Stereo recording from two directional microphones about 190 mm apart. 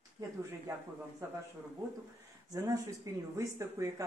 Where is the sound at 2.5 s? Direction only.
15° right (ahead or behind).